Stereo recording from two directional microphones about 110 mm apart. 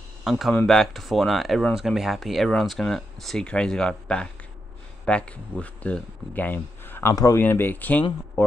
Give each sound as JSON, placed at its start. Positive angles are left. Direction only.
{"t": 0.2, "sound": "speech", "side_deg": 0}